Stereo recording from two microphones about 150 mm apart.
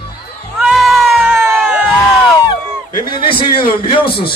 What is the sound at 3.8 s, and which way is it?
Speech, 35° left (ahead or behind).